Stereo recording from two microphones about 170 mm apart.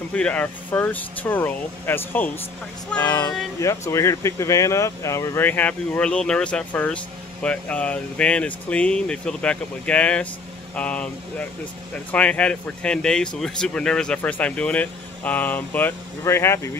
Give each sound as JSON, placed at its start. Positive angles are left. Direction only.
{"t": 0.1, "sound": "speech", "side_deg": 5}
{"t": 3.0, "sound": "speech", "side_deg": 25}